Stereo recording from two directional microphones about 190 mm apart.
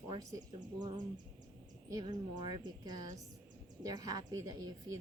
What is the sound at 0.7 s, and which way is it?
A woman's voice, 20° right (ahead or behind).